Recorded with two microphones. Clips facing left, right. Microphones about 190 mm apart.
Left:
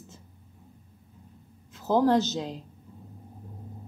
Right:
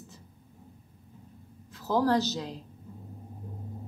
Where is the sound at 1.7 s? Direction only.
20° left (ahead or behind).